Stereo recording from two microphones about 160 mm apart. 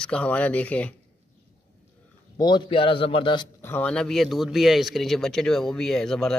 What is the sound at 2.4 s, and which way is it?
A man's voice, 30° left (ahead or behind).